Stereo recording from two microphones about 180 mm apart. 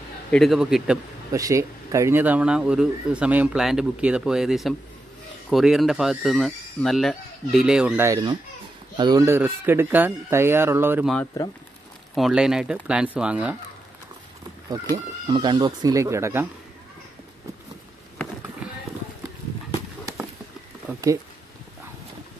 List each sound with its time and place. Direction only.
0.3 s speech: centre (ahead or behind)
1.3 s speech: 15° right (ahead or behind)
12.2 s speech: centre (ahead or behind)
15.2 s speech: 30° right (ahead or behind)